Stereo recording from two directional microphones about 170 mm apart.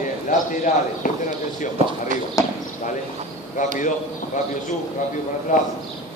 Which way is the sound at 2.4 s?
20° left (ahead or behind).